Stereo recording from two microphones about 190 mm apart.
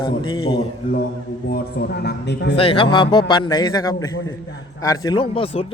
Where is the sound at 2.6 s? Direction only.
30° left (ahead or behind).